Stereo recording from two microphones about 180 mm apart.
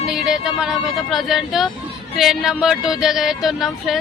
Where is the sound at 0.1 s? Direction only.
Centre (ahead or behind).